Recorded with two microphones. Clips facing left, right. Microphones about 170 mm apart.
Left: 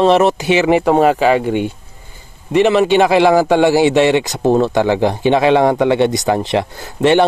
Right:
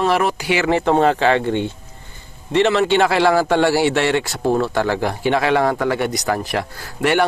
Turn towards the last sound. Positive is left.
turn(degrees=25)  # may be behind; listen again after turning